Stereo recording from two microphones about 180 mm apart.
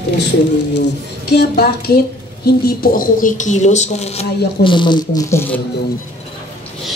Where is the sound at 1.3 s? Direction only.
65° left (ahead or behind); by 5.4 s 20° left (ahead or behind).